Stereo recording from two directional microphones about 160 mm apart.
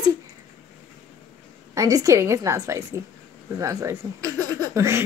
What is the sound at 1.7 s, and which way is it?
A woman's voice, 20° right (ahead or behind).